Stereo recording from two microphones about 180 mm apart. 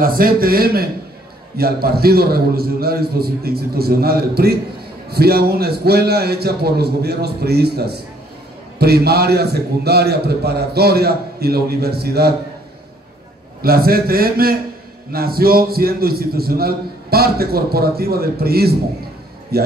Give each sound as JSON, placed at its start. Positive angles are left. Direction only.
{"t": 0.0, "sound": "a man's voice", "side_deg": -55}
{"t": 13.6, "sound": "a man's voice", "side_deg": -55}